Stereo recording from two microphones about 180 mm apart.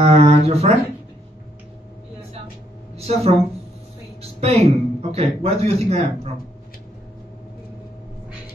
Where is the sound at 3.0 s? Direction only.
35° right (ahead or behind).